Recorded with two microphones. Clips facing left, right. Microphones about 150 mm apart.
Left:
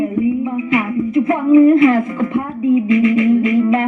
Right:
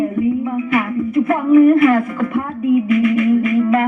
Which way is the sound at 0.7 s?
20° left (ahead or behind).